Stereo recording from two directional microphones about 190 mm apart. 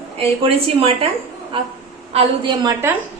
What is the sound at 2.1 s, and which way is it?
Speech, 30° right (ahead or behind).